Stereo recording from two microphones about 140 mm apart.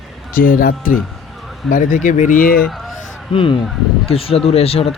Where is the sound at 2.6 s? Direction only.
Centre (ahead or behind).